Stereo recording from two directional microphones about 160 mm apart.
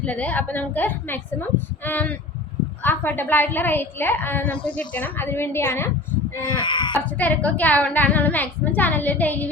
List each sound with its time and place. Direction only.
0.0 s a woman's voice: 10° left (ahead or behind)
6.4 s speech: 30° left (ahead or behind)
7.0 s a woman's voice: 10° left (ahead or behind)